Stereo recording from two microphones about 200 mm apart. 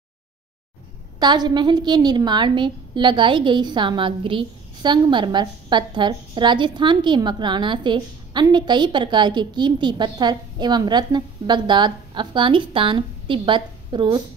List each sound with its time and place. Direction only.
1.2 s a woman's voice: 20° right (ahead or behind)